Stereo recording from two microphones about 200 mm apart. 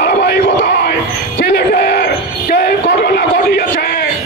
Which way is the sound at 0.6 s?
55° left (ahead or behind).